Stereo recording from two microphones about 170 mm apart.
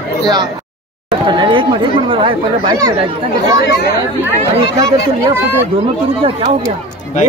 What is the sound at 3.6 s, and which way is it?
Speech, 70° left (ahead or behind).